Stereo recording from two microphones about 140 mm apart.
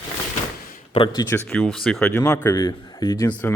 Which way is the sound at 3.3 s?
10° left (ahead or behind).